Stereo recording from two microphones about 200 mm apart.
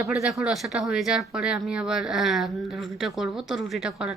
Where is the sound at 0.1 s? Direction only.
5° right (ahead or behind).